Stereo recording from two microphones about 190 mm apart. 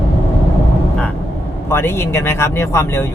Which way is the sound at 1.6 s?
15° left (ahead or behind).